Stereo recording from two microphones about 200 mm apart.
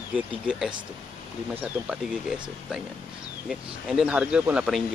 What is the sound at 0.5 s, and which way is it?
Speech, 5° right (ahead or behind).